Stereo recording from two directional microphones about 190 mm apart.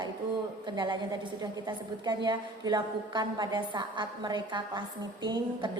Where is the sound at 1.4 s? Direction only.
25° right (ahead or behind).